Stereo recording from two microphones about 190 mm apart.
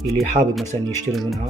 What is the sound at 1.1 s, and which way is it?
Speech, centre (ahead or behind).